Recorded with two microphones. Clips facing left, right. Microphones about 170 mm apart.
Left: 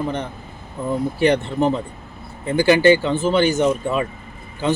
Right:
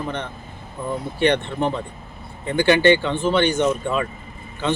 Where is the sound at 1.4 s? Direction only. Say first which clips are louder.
Left 4 dB; 5° left (ahead or behind).